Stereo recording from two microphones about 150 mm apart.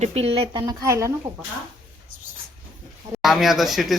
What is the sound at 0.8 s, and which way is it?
Speech, 20° right (ahead or behind).